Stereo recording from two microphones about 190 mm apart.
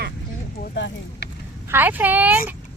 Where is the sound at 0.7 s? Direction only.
70° left (ahead or behind).